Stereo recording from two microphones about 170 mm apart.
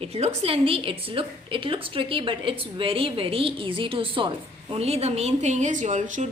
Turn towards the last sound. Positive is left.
turn(degrees=-45)  # may be behind; listen again after turning